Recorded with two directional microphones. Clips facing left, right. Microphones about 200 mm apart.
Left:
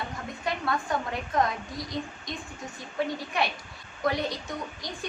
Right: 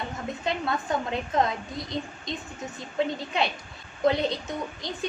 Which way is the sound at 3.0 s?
20° right (ahead or behind).